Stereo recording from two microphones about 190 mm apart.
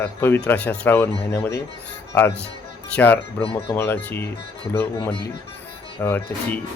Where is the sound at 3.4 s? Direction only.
30° left (ahead or behind).